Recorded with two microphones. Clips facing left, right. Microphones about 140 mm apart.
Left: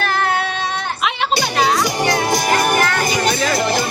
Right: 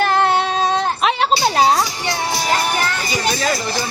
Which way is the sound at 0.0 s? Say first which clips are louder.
Right 3 dB; 25° right (ahead or behind).